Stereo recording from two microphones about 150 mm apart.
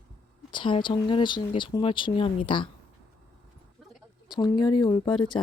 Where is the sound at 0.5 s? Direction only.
30° left (ahead or behind).